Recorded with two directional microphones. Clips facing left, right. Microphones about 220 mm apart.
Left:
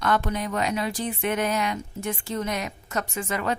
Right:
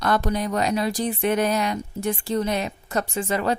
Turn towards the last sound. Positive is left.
turn(degrees=-30)  # may be behind; listen again after turning